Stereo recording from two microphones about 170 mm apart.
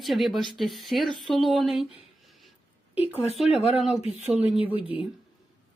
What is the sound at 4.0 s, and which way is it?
Speech, 40° left (ahead or behind).